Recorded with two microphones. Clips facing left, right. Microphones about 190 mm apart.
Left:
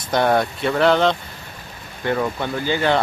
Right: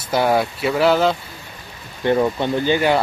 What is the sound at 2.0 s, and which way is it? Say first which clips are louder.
Speech: right 4 dB; 20° right (ahead or behind).